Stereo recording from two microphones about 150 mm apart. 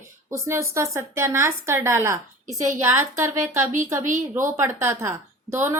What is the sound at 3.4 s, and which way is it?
Speech, 20° right (ahead or behind).